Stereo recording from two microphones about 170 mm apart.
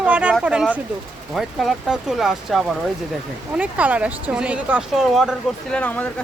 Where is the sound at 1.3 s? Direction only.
Centre (ahead or behind).